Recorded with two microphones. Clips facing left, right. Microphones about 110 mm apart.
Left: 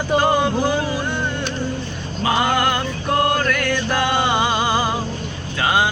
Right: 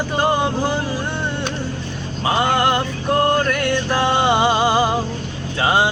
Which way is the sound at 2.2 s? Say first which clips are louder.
Right 1 dB; 25° right (ahead or behind).